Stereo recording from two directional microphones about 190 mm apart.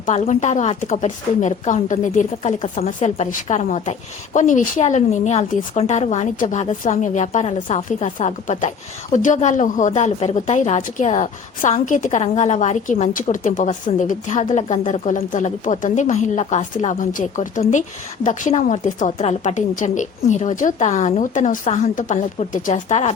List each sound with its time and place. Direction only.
0.0 s a woman's voice: 40° left (ahead or behind)